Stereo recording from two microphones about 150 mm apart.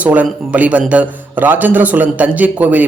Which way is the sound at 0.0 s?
10° right (ahead or behind).